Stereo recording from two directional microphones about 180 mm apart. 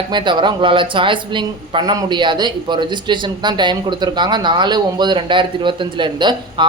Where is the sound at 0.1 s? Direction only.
25° right (ahead or behind).